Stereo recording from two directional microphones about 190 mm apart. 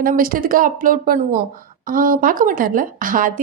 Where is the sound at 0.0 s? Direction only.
50° right (ahead or behind).